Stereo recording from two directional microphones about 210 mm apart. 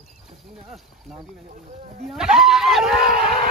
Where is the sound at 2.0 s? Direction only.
Centre (ahead or behind).